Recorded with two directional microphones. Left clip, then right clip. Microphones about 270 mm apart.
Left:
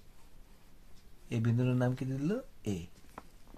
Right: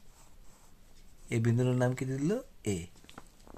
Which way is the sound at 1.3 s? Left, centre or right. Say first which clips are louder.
Right 3 dB; right.